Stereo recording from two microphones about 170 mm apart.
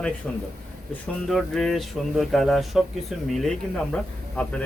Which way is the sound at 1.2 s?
Centre (ahead or behind).